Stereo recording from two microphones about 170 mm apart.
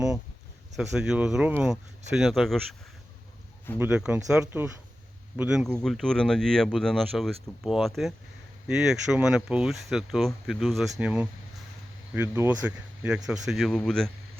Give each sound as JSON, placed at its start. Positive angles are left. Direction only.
{"t": 0.8, "sound": "speech", "side_deg": -5}
{"t": 3.8, "sound": "speech", "side_deg": -10}